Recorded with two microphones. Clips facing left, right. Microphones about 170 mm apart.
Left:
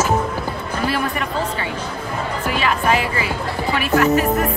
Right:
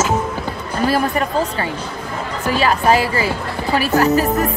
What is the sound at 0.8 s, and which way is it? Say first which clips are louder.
Speech: right 5 dB; 40° right (ahead or behind).